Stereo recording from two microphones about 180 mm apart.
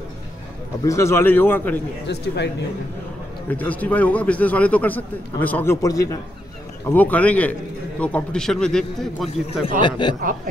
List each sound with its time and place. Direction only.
0.8 s a man's voice: 15° left (ahead or behind)
2.0 s speech: 70° left (ahead or behind)
3.4 s a man's voice: 10° left (ahead or behind)
9.8 s speech: 25° left (ahead or behind)